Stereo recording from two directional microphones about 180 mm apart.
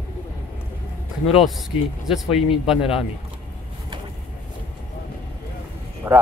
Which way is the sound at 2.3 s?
35° left (ahead or behind).